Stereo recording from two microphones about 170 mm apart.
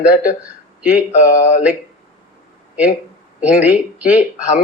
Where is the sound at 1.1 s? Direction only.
45° left (ahead or behind).